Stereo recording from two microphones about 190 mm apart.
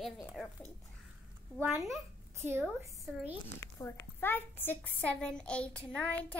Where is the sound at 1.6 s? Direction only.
Centre (ahead or behind).